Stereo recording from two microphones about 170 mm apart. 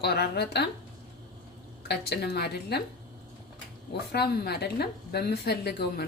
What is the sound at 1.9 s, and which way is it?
Speech, 70° left (ahead or behind).